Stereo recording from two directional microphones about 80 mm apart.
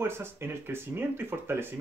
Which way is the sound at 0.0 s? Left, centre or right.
Right.